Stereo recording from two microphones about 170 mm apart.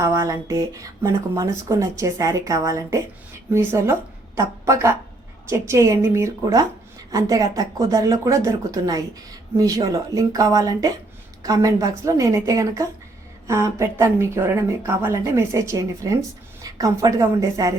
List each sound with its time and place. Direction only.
0.0 s a woman's voice: 15° right (ahead or behind)